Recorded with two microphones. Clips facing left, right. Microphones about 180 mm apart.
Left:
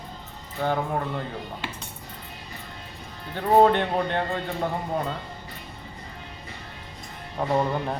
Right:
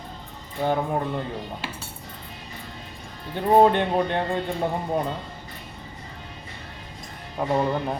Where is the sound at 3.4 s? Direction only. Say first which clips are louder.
Right 1 dB; 15° right (ahead or behind).